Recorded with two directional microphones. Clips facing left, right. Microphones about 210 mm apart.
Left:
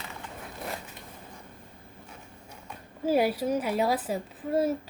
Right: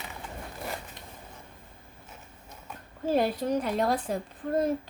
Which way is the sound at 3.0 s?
10° left (ahead or behind).